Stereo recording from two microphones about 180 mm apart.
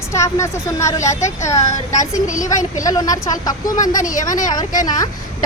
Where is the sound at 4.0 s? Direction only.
45° left (ahead or behind).